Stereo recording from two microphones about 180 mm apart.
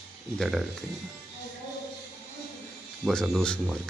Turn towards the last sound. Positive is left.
turn(degrees=5)  # may be behind; listen again after turning